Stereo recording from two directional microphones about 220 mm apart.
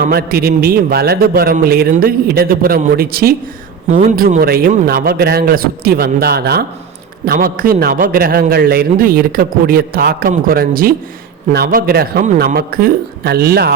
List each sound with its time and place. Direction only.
0.0 s a man's voice: 45° right (ahead or behind)